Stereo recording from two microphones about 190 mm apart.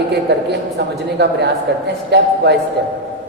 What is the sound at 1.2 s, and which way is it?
A man's voice, 60° right (ahead or behind).